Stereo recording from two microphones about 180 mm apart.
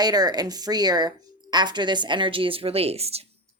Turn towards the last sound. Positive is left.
turn(degrees=-35)  # may be behind; listen again after turning